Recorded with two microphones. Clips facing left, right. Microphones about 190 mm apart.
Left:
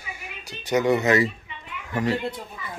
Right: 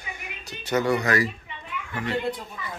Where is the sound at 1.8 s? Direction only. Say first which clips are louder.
Left 7 dB; 40° left (ahead or behind).